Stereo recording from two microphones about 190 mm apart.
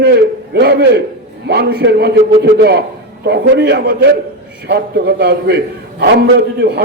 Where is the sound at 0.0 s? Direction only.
55° right (ahead or behind).